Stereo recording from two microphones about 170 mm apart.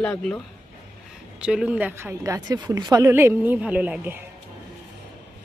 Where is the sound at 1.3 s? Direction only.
5° right (ahead or behind).